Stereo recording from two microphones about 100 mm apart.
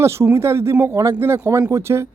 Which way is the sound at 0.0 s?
25° right (ahead or behind).